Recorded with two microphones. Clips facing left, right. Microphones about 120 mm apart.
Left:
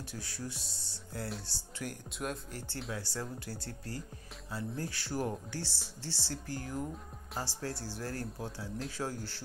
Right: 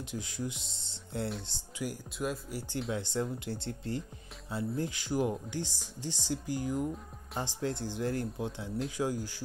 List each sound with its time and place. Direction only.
0.1 s speech: 20° right (ahead or behind)
1.5 s speech: 10° right (ahead or behind)
2.9 s speech: 20° right (ahead or behind)